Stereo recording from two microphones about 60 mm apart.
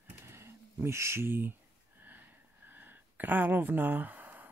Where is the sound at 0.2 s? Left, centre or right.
Right.